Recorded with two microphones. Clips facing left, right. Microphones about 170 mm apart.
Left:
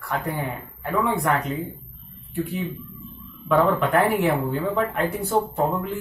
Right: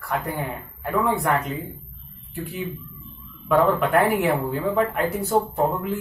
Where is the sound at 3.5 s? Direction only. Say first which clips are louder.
Right 1 dB; centre (ahead or behind).